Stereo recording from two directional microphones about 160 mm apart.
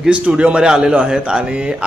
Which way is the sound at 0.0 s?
5° right (ahead or behind).